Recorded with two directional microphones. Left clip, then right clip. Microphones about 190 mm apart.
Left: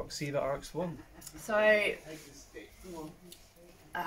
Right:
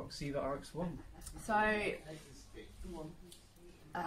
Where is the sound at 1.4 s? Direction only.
5° right (ahead or behind).